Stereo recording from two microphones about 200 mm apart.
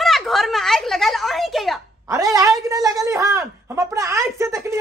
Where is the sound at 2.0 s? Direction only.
15° right (ahead or behind).